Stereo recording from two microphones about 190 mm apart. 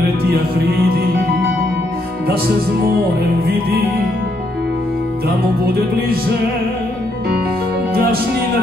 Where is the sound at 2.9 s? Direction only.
55° right (ahead or behind).